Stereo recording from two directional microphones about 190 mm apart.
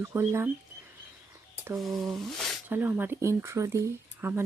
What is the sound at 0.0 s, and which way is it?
Speech, 10° right (ahead or behind).